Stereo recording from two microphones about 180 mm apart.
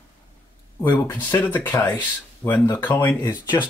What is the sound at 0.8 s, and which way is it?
Speech, 10° left (ahead or behind).